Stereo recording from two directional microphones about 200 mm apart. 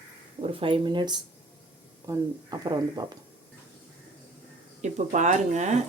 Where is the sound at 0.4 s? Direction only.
25° right (ahead or behind).